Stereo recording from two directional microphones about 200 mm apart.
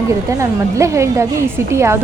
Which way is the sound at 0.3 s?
15° right (ahead or behind).